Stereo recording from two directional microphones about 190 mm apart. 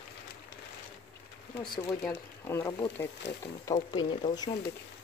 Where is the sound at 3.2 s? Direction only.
70° left (ahead or behind).